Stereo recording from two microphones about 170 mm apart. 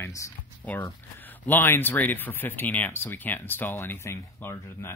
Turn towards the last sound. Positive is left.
turn(degrees=15)  # may be behind; listen again after turning